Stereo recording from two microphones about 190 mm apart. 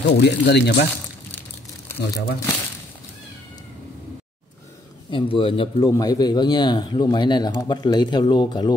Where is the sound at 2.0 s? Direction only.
60° left (ahead or behind).